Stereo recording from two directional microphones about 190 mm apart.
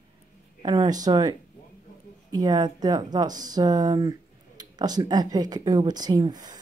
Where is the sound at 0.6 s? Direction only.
20° right (ahead or behind).